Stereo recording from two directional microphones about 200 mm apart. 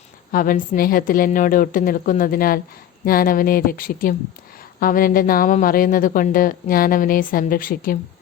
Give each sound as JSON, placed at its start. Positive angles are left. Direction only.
{"t": 0.3, "sound": "a woman's voice", "side_deg": 45}